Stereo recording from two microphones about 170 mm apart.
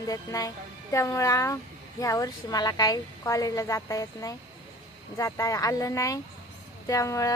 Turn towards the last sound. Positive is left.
turn(degrees=20)  # may be behind; listen again after turning